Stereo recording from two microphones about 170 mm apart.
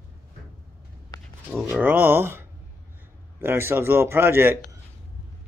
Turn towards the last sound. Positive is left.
turn(degrees=-15)  # may be behind; listen again after turning